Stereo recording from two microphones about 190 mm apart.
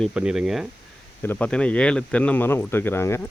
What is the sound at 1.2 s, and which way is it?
Speech, 10° left (ahead or behind).